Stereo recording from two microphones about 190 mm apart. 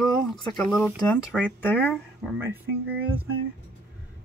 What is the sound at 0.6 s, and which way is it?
Speech, 5° left (ahead or behind).